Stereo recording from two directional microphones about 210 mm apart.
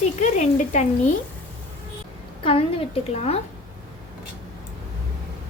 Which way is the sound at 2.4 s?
25° left (ahead or behind).